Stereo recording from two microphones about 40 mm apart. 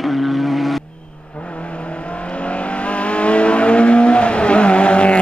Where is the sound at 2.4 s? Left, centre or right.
Left.